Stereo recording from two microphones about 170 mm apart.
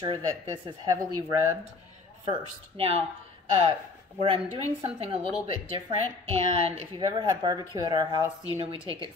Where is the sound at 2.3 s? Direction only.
35° right (ahead or behind).